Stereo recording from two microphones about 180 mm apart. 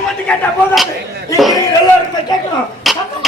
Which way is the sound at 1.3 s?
Centre (ahead or behind).